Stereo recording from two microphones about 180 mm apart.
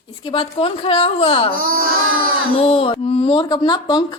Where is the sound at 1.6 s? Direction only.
50° right (ahead or behind).